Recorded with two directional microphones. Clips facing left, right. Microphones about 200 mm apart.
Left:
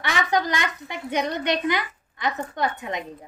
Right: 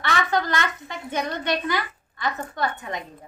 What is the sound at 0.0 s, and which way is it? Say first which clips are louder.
A woman's voice: even; 15° left (ahead or behind).